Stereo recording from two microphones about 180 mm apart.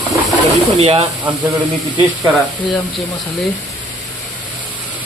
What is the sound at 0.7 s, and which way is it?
Speech, 35° right (ahead or behind).